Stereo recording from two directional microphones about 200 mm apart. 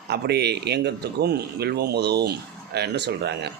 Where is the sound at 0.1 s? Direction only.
55° right (ahead or behind).